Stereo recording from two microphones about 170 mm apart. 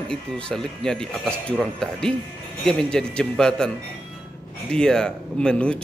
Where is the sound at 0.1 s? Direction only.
5° left (ahead or behind).